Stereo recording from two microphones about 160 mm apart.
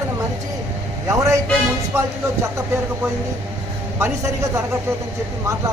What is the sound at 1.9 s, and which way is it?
Speech, 15° right (ahead or behind).